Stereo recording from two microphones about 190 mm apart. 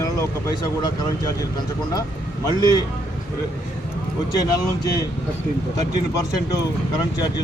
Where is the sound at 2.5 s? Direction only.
20° left (ahead or behind).